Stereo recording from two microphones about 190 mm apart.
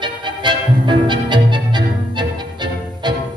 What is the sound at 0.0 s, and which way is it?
Music, 25° right (ahead or behind).